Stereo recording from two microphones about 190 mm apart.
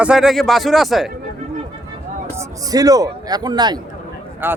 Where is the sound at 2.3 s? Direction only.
20° right (ahead or behind).